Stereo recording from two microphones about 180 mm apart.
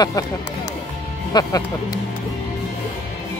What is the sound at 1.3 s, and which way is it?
Speech, 25° left (ahead or behind).